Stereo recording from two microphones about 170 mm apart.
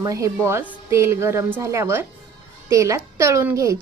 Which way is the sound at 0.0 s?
20° right (ahead or behind).